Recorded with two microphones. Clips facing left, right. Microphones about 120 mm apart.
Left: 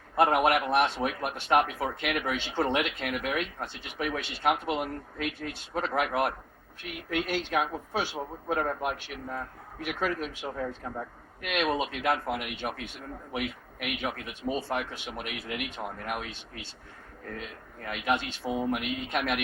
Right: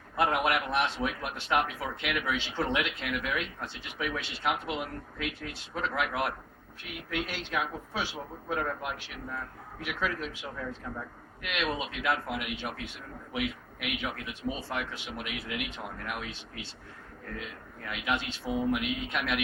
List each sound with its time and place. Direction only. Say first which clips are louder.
0.2 s a man's voice: left 4 dB; 50° left (ahead or behind)
17.8 s a man's voice: left 3 dB; 45° left (ahead or behind)